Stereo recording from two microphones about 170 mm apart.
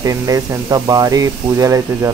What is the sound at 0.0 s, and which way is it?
Speech, 20° right (ahead or behind).